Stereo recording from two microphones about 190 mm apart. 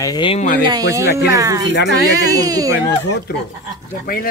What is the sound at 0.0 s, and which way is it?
Speech, 25° left (ahead or behind).